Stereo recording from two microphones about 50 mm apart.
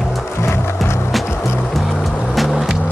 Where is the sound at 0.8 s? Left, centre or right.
Left.